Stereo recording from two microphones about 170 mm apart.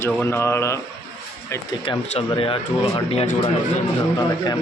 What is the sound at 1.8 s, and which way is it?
Speech, 30° left (ahead or behind).